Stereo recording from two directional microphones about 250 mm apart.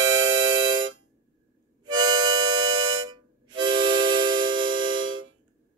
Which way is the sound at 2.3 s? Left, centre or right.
Right.